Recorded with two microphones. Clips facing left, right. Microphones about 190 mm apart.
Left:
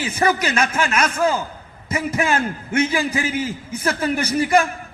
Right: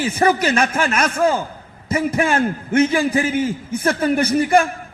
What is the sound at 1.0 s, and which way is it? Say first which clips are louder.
A man's voice: right 2 dB; 30° right (ahead or behind).